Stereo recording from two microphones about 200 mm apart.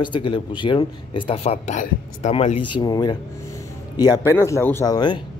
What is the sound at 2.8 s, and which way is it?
Speech, 20° left (ahead or behind).